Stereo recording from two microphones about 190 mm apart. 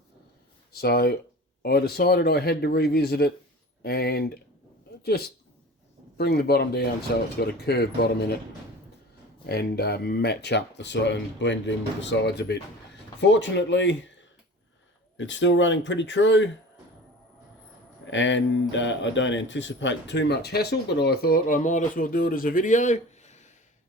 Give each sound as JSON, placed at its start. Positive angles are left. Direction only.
{"t": 0.7, "sound": "speech", "side_deg": 55}
{"t": 9.5, "sound": "speech", "side_deg": 55}
{"t": 13.1, "sound": "speech", "side_deg": 75}
{"t": 15.2, "sound": "speech", "side_deg": 75}
{"t": 18.1, "sound": "speech", "side_deg": 75}